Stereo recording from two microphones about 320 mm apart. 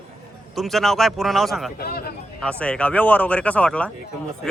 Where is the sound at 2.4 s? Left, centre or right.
Centre.